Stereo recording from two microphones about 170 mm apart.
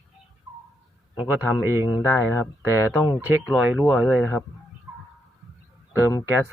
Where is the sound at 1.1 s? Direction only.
25° left (ahead or behind).